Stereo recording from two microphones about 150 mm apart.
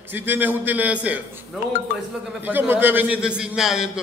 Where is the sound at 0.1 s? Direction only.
15° right (ahead or behind).